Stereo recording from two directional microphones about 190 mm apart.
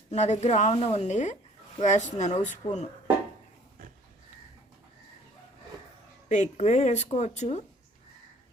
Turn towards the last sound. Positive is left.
turn(degrees=35)  # may be behind; listen again after turning